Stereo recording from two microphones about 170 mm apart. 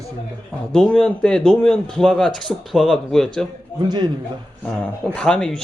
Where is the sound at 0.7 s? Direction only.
5° left (ahead or behind).